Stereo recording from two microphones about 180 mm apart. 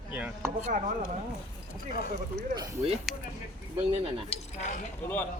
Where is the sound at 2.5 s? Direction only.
20° right (ahead or behind).